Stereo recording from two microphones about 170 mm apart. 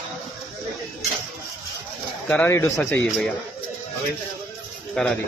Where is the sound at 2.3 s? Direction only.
15° left (ahead or behind).